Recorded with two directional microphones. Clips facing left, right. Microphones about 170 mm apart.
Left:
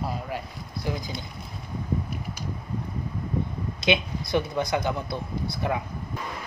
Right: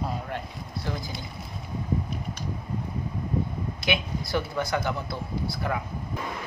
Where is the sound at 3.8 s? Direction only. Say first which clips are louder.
Left 5 dB; 20° left (ahead or behind).